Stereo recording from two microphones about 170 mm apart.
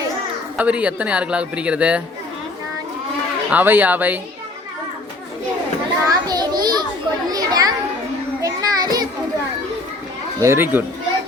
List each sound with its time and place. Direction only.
0.5 s speech: 5° right (ahead or behind)
3.5 s speech: 10° right (ahead or behind)
6.1 s children playing: 25° right (ahead or behind)
10.4 s speech: 15° right (ahead or behind)